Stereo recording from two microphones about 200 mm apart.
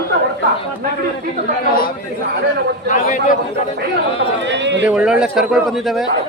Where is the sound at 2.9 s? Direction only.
40° left (ahead or behind).